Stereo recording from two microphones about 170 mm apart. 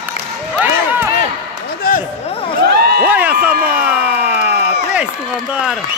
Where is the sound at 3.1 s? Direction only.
10° right (ahead or behind).